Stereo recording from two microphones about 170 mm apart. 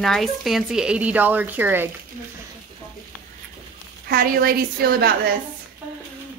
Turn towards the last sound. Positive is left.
turn(degrees=-65)  # may be behind; listen again after turning